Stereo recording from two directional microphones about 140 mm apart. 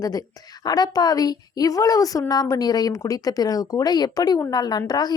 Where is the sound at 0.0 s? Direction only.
25° left (ahead or behind).